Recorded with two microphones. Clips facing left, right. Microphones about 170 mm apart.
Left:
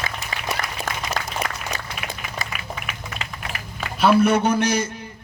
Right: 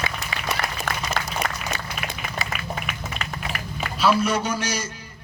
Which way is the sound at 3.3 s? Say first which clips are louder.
Right 2 dB; 45° right (ahead or behind).